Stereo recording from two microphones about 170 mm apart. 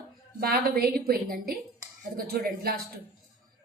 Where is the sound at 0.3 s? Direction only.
60° right (ahead or behind).